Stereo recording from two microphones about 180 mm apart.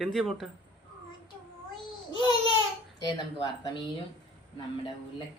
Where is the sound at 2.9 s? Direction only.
20° left (ahead or behind).